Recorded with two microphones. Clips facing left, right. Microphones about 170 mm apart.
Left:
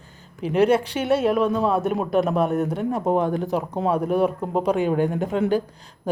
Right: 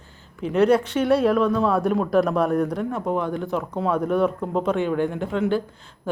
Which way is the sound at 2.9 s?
35° left (ahead or behind).